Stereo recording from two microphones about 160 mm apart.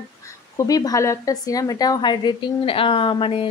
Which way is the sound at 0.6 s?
25° left (ahead or behind).